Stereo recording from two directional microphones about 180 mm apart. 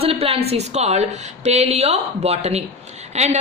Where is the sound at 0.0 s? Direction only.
30° right (ahead or behind).